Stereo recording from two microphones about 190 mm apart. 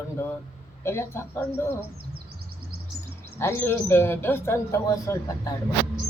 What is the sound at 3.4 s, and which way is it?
Speech, 10° left (ahead or behind).